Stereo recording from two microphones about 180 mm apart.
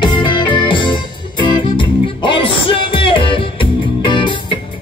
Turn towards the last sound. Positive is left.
turn(degrees=25)  # may be behind; listen again after turning